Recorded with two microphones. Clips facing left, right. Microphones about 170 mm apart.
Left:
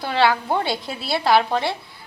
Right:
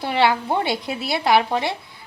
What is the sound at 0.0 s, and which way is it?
A woman's voice, 20° right (ahead or behind).